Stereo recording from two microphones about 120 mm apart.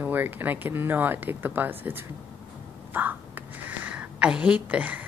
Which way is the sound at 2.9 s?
15° right (ahead or behind).